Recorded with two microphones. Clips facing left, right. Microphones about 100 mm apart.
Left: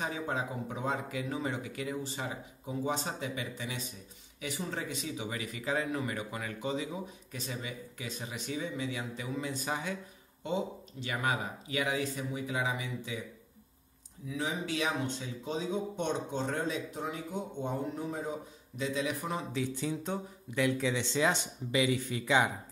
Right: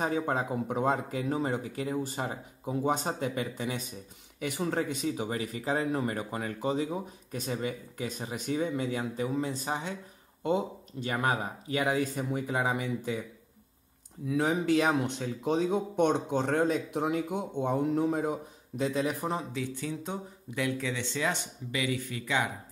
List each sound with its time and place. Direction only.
0.0 s speech: 45° right (ahead or behind); by 9.9 s 30° right (ahead or behind)
10.4 s speech: 45° right (ahead or behind)
14.2 s speech: 60° right (ahead or behind)
18.8 s speech: 50° right (ahead or behind)
20.7 s speech: 20° left (ahead or behind)